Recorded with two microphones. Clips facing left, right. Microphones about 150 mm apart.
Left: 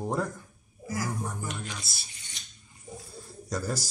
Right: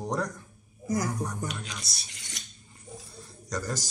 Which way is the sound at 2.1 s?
90° right.